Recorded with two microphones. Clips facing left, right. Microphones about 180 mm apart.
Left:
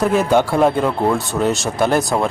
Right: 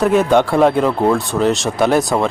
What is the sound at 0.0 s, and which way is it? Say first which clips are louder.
Speech: right 2 dB; centre (ahead or behind).